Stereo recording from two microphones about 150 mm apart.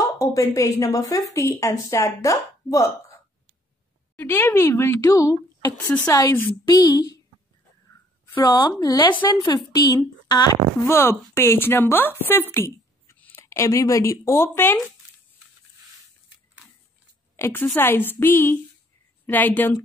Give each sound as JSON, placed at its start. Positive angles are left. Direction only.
{"t": 0.2, "sound": "a sound", "side_deg": 20}
{"t": 0.6, "sound": "speech", "side_deg": 20}
{"t": 4.2, "sound": "speech", "side_deg": 15}
{"t": 8.5, "sound": "speech", "side_deg": 25}
{"t": 10.9, "sound": "speech", "side_deg": 15}
{"t": 17.4, "sound": "a woman's voice", "side_deg": 15}